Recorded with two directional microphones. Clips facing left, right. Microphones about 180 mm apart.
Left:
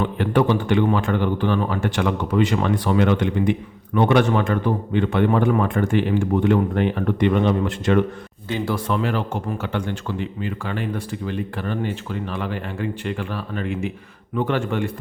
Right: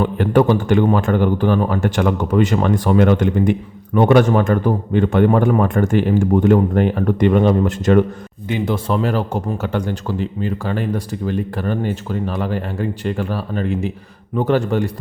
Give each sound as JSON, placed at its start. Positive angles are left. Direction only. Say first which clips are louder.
{"t": 0.0, "sound": "a man's voice", "louder": "right 5 dB", "side_deg": -45}
{"t": 8.4, "sound": "speech", "louder": "right 4 dB", "side_deg": -20}
{"t": 8.9, "sound": "speech", "louder": "right 5 dB", "side_deg": -40}